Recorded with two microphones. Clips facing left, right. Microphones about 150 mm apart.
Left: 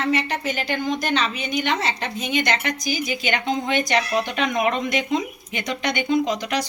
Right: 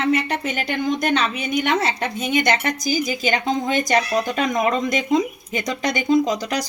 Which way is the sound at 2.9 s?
40° right (ahead or behind).